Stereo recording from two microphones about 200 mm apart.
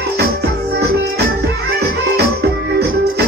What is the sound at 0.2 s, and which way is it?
Music, 55° right (ahead or behind).